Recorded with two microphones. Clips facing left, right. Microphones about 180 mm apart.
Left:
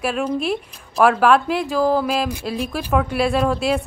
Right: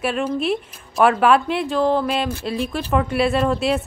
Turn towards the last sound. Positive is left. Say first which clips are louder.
# even
turn(degrees=0)  # may be behind; listen again after turning